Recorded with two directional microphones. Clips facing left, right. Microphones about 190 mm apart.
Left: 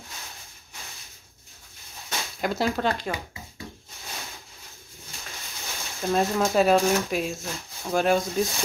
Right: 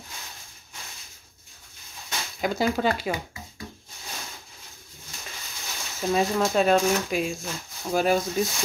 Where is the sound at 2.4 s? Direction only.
Centre (ahead or behind).